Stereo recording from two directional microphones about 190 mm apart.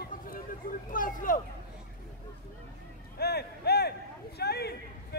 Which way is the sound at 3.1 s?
55° left (ahead or behind).